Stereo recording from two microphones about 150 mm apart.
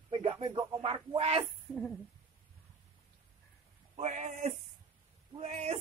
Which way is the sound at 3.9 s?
50° right (ahead or behind).